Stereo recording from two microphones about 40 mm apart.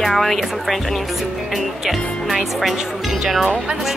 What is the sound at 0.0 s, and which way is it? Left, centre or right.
Speech, centre.